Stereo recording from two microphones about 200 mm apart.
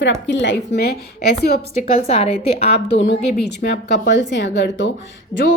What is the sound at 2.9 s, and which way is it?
A woman's voice, 60° left (ahead or behind).